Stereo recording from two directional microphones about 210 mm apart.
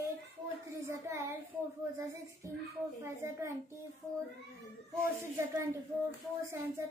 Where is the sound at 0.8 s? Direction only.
15° right (ahead or behind).